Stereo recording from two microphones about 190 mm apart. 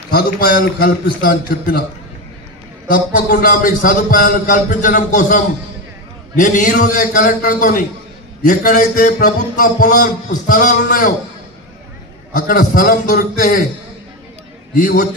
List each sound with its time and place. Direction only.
0.1 s speech: 55° left (ahead or behind)
2.9 s speech: 50° left (ahead or behind)
12.4 s speech: 45° left (ahead or behind)
14.8 s speech: 50° left (ahead or behind)